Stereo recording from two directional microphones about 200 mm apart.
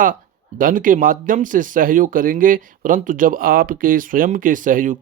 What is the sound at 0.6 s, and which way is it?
Speech, 45° right (ahead or behind).